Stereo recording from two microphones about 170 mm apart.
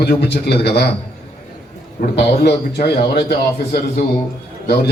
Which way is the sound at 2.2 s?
75° left (ahead or behind).